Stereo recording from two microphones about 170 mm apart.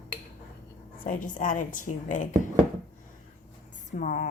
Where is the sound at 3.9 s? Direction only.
50° left (ahead or behind).